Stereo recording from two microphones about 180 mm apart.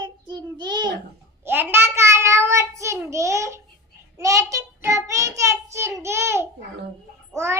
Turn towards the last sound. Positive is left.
turn(degrees=-15)  # may be behind; listen again after turning